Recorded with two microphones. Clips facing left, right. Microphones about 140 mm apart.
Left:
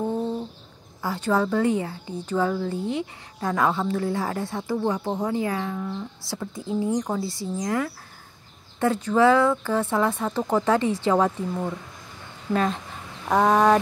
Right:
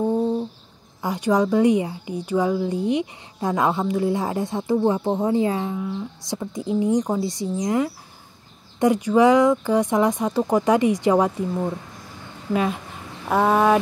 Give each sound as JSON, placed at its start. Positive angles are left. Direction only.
{"t": 1.0, "sound": "a woman's voice", "side_deg": -15}
{"t": 5.8, "sound": "a woman's voice", "side_deg": -10}